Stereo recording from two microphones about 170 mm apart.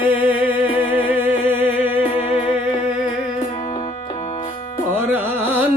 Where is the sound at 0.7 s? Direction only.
30° left (ahead or behind).